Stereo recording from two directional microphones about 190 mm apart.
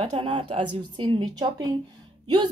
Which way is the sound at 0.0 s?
30° right (ahead or behind).